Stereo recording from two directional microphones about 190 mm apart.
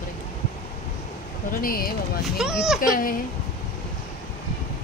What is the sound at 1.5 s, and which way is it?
Speech, 50° left (ahead or behind).